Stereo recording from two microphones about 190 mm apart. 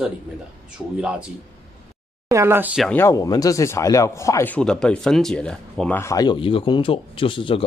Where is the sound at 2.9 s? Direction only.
15° left (ahead or behind).